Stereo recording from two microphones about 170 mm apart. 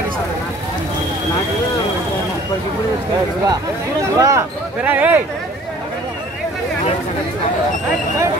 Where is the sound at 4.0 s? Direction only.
20° right (ahead or behind).